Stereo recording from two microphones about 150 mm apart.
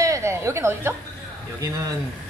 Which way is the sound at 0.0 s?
20° right (ahead or behind).